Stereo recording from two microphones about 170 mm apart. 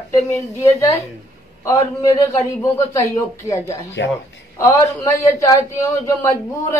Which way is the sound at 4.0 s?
90° left.